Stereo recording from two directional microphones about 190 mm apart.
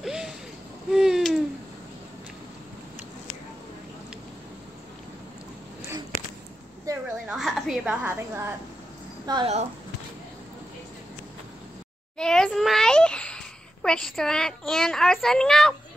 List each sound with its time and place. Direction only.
0.0 s music: 5° right (ahead or behind)
0.8 s a sound: 5° right (ahead or behind)
7.2 s a woman's voice: centre (ahead or behind)
9.2 s a woman's voice: 20° right (ahead or behind)
12.2 s a sound: 5° left (ahead or behind)
13.8 s a child's voice: 5° left (ahead or behind)